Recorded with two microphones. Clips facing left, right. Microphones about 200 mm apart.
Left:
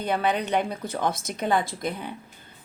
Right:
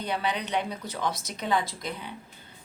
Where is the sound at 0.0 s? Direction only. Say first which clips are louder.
Left 5 dB; 50° left (ahead or behind).